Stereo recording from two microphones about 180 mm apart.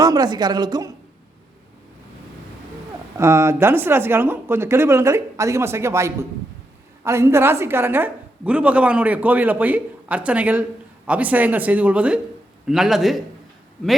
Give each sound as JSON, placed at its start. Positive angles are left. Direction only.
{"t": 0.0, "sound": "a woman's voice", "side_deg": -20}
{"t": 3.2, "sound": "a woman's voice", "side_deg": -15}